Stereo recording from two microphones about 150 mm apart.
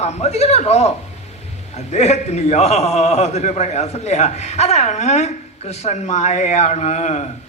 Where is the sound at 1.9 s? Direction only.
45° left (ahead or behind).